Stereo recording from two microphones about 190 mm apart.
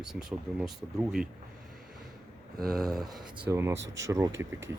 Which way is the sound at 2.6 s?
Centre (ahead or behind).